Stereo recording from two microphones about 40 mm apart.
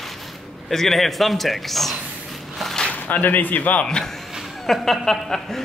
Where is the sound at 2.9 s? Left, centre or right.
Left.